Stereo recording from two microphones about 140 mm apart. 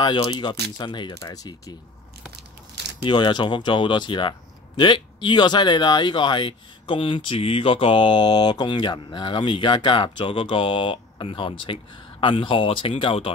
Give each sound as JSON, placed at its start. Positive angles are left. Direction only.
{"t": 0.0, "sound": "speech", "side_deg": 30}
{"t": 3.0, "sound": "speech", "side_deg": 35}